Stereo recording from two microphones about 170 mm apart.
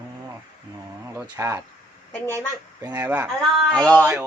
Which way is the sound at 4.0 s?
10° right (ahead or behind).